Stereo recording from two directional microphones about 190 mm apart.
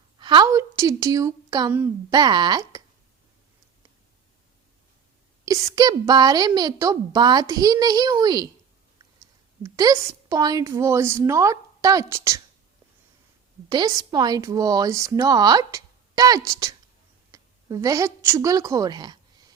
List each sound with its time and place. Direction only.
0.2 s a sound: 25° right (ahead or behind)
2.0 s speech: 20° right (ahead or behind)
5.5 s speech: 20° right (ahead or behind)
9.6 s a woman's voice: 20° right (ahead or behind)
13.7 s a woman's voice: 20° right (ahead or behind)